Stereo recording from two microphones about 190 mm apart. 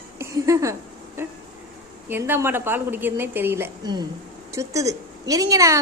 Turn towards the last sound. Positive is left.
turn(degrees=-15)  # may be behind; listen again after turning